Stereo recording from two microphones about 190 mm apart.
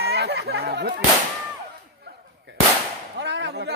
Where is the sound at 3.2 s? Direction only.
65° right (ahead or behind).